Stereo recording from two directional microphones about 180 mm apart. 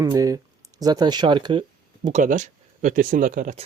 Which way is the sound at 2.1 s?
40° right (ahead or behind).